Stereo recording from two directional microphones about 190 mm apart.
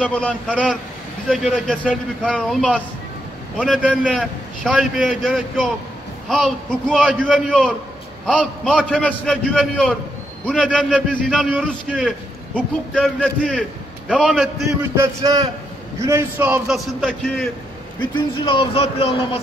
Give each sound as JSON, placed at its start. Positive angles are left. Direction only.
{"t": 0.0, "sound": "a man's voice", "side_deg": 5}
{"t": 12.5, "sound": "a man's voice", "side_deg": 5}
{"t": 14.8, "sound": "a man's voice", "side_deg": -15}
{"t": 18.4, "sound": "speech", "side_deg": 25}